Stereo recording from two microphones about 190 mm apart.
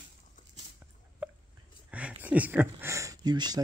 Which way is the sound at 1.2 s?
10° right (ahead or behind).